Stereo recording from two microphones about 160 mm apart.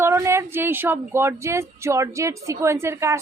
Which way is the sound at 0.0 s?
15° right (ahead or behind).